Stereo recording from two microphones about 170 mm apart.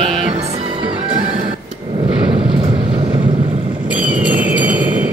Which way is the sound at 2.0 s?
30° right (ahead or behind).